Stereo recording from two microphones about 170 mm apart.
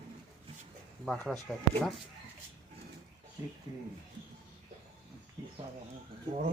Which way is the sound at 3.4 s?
20° right (ahead or behind).